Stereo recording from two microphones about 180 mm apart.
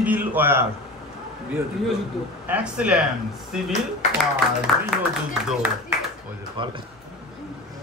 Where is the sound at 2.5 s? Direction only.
5° right (ahead or behind).